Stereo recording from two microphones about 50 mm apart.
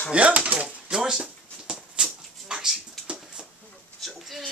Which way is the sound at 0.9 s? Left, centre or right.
Centre.